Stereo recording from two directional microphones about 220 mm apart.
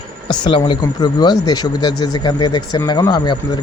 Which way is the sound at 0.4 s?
20° left (ahead or behind).